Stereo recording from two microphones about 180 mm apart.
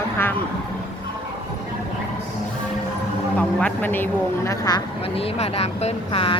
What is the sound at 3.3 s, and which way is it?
Speech, 10° left (ahead or behind).